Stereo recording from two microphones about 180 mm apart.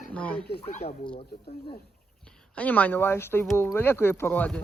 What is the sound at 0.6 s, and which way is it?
Speech, 35° left (ahead or behind).